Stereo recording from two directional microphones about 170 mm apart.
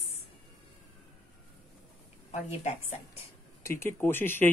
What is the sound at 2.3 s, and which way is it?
Speech, 40° left (ahead or behind).